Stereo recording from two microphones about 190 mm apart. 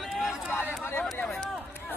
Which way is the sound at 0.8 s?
10° left (ahead or behind).